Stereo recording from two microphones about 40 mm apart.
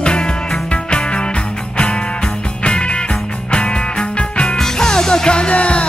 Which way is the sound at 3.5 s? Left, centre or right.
Left.